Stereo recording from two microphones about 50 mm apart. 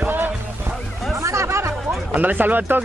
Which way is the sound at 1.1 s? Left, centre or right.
Right.